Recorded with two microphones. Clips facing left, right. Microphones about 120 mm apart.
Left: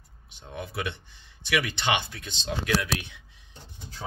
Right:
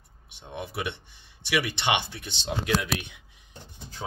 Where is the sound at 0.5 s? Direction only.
25° right (ahead or behind).